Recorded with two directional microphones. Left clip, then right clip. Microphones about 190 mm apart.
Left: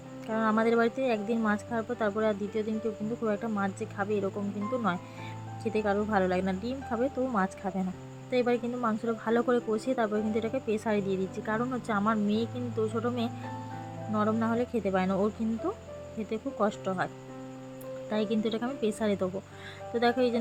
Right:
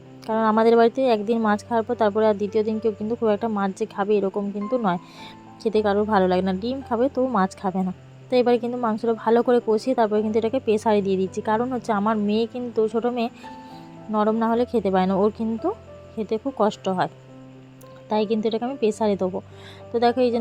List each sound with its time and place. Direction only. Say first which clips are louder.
0.3 s speech: right 9 dB; 20° right (ahead or behind)
18.1 s speech: right 8 dB; 15° right (ahead or behind)